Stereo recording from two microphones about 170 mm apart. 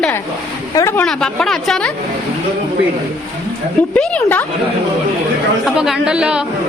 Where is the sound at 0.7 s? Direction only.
15° left (ahead or behind).